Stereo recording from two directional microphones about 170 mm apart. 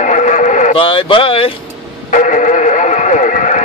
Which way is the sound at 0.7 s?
30° left (ahead or behind).